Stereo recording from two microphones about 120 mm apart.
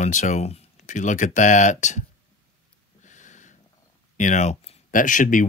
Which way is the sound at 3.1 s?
90° left.